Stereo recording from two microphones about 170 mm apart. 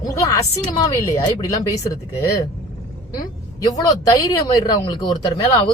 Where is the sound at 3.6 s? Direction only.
20° left (ahead or behind).